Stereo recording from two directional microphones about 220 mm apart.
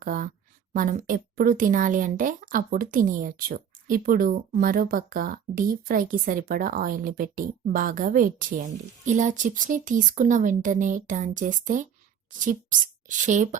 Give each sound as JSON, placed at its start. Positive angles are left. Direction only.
{"t": 0.0, "sound": "a woman's voice", "side_deg": -40}